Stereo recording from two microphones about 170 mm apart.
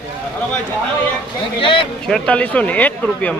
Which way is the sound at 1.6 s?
30° left (ahead or behind).